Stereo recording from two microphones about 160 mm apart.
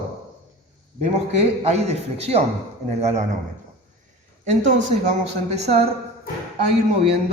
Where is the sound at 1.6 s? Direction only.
45° right (ahead or behind).